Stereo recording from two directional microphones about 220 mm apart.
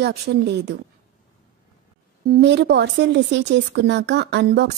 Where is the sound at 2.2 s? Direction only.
45° right (ahead or behind).